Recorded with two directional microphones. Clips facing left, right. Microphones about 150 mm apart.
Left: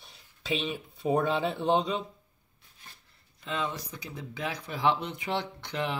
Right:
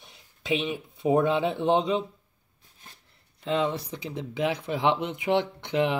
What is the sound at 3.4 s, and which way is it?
Speech, 25° right (ahead or behind).